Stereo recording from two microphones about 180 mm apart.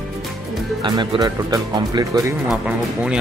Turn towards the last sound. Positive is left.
turn(degrees=-5)  # may be behind; listen again after turning